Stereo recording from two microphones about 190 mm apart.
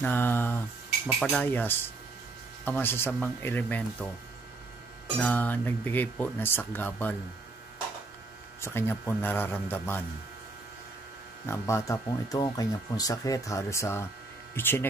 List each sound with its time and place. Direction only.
0.0 s speech: 10° left (ahead or behind)
5.2 s speech: 10° left (ahead or behind)
8.5 s speech: 15° left (ahead or behind)
11.4 s speech: 15° left (ahead or behind)